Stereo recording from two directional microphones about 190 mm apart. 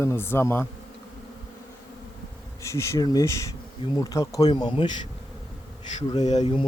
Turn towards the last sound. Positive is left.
turn(degrees=30)  # may be behind; listen again after turning